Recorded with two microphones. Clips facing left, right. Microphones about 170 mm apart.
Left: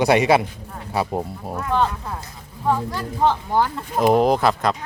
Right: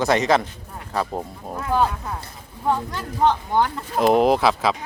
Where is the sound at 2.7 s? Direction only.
Centre (ahead or behind).